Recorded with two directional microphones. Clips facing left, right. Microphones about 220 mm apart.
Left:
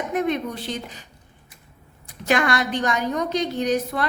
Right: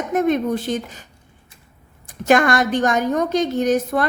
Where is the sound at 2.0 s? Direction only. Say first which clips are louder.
Right 6 dB; 45° right (ahead or behind).